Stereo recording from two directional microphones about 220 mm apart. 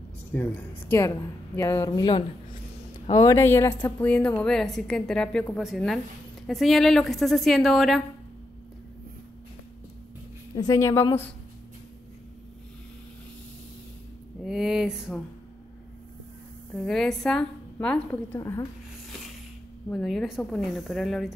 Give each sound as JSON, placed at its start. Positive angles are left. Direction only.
{"t": 0.3, "sound": "a woman's voice", "side_deg": 10}
{"t": 10.5, "sound": "a woman's voice", "side_deg": 15}
{"t": 14.4, "sound": "speech", "side_deg": 0}
{"t": 16.7, "sound": "a woman's voice", "side_deg": 0}
{"t": 19.9, "sound": "a woman's voice", "side_deg": 0}